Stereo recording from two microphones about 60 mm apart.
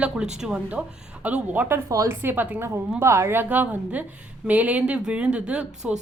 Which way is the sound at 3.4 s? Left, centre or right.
Right.